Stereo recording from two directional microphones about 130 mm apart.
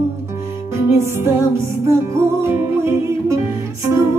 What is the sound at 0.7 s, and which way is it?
Music, 20° right (ahead or behind).